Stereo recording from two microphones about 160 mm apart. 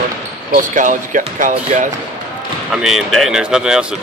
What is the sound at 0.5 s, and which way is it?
Speech, 55° right (ahead or behind).